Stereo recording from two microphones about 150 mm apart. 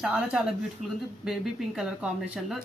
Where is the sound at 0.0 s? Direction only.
5° right (ahead or behind).